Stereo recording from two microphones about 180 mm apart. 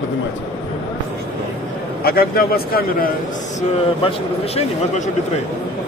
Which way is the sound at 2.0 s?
55° left (ahead or behind).